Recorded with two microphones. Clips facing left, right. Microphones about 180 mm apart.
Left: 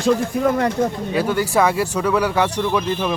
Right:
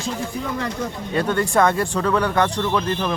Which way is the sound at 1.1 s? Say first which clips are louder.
Even; 5° left (ahead or behind).